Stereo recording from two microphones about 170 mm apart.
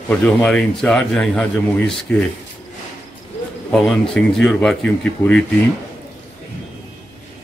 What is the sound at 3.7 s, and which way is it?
A man's voice, centre (ahead or behind).